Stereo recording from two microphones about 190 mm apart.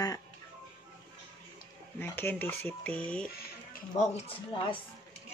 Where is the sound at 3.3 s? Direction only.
50° left (ahead or behind).